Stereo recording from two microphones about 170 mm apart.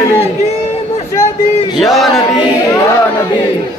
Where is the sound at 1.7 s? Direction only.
Centre (ahead or behind).